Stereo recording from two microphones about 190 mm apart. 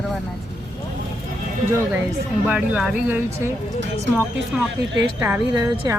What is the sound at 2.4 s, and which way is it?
Speech, 5° right (ahead or behind).